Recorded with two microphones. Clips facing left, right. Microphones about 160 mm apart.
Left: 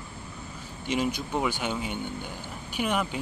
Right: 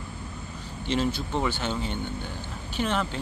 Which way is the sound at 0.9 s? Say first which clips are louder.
Right 1 dB; 15° left (ahead or behind).